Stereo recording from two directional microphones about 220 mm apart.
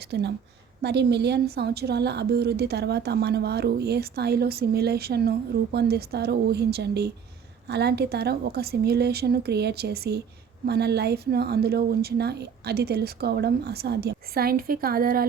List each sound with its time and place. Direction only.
0.1 s a woman's voice: 50° right (ahead or behind)